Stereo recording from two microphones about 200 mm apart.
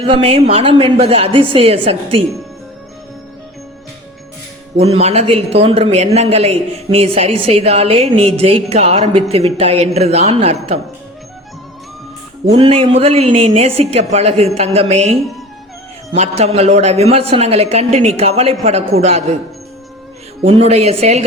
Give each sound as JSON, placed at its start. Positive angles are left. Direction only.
{"t": 0.0, "sound": "a woman's voice", "side_deg": -30}
{"t": 4.8, "sound": "a man's voice", "side_deg": -30}
{"t": 12.5, "sound": "a man's voice", "side_deg": -30}
{"t": 16.1, "sound": "a man's voice", "side_deg": -30}
{"t": 20.4, "sound": "a man's voice", "side_deg": -30}